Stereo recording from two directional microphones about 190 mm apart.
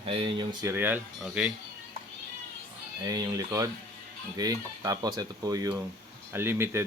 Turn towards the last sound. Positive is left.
turn(degrees=-10)  # may be behind; listen again after turning